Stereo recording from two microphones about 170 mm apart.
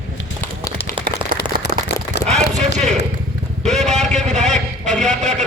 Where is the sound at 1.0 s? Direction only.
10° right (ahead or behind).